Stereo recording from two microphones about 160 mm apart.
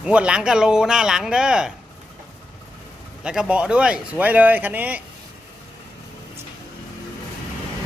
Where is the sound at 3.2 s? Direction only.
5° right (ahead or behind).